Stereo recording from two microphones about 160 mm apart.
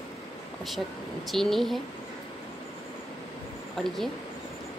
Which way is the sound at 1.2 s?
Centre (ahead or behind).